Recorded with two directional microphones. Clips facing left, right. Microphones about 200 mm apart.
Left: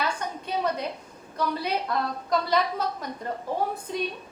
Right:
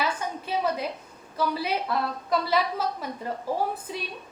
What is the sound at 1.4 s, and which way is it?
A woman's voice, 5° right (ahead or behind).